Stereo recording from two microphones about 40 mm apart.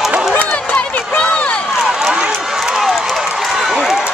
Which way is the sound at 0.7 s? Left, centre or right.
Left.